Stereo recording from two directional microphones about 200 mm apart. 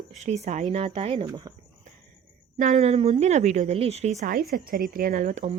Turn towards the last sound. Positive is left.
turn(degrees=-40)  # may be behind; listen again after turning